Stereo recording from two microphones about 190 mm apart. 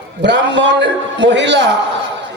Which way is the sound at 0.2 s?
70° right (ahead or behind).